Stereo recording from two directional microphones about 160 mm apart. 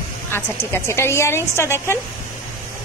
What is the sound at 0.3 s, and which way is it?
A woman's voice, 15° left (ahead or behind).